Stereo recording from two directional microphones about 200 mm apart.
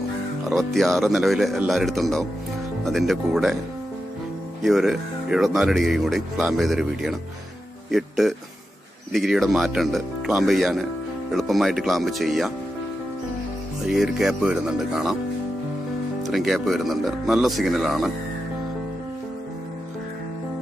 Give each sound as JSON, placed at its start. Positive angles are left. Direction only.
{"t": 0.5, "sound": "speech", "side_deg": 0}
{"t": 4.6, "sound": "speech", "side_deg": 0}
{"t": 13.8, "sound": "speech", "side_deg": -5}
{"t": 16.3, "sound": "speech", "side_deg": 0}